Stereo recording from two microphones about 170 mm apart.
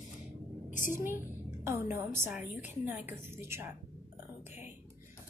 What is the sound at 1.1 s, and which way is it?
A woman's voice, 15° right (ahead or behind).